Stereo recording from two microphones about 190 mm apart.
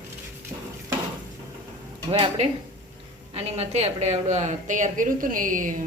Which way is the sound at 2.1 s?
30° right (ahead or behind).